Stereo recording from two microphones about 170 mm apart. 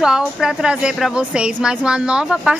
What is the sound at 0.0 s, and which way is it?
A woman's voice, 5° right (ahead or behind).